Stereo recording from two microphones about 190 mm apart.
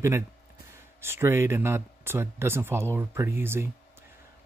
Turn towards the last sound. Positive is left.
turn(degrees=-10)  # may be behind; listen again after turning